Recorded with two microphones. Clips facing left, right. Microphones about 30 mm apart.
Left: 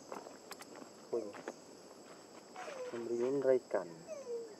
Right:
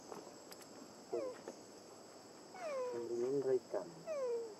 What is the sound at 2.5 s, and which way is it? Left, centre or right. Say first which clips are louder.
Wild animals: right 3 dB; left.